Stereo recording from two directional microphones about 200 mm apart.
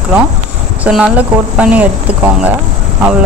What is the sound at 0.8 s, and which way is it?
A woman's voice, 5° right (ahead or behind).